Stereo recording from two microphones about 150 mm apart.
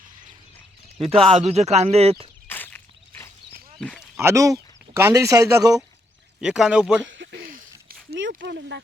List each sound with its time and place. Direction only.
1.2 s speech: 50° right (ahead or behind)
2.5 s a sound: 10° left (ahead or behind)
3.8 s speech: 5° left (ahead or behind)
4.2 s speech: 20° right (ahead or behind)
6.4 s speech: 5° right (ahead or behind)
7.9 s a sound: 85° right